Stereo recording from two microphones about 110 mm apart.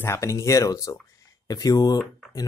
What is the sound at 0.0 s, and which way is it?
Speech, 25° left (ahead or behind).